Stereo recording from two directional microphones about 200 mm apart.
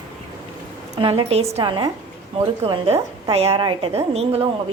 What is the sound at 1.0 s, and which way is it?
A woman's voice, 25° right (ahead or behind).